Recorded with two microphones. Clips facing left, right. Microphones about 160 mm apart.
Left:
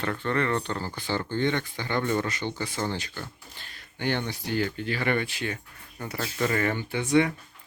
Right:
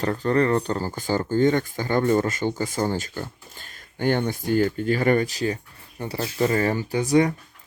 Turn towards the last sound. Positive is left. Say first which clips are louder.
# right 4 dB
turn(degrees=-40)  # may be behind; listen again after turning